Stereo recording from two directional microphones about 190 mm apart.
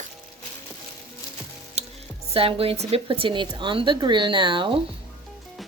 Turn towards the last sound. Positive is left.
turn(degrees=-25)  # may be behind; listen again after turning